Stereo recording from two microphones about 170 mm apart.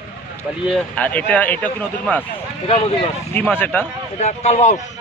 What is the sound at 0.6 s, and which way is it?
Speech, 5° left (ahead or behind).